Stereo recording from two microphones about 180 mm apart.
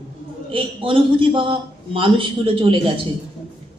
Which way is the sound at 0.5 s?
30° right (ahead or behind).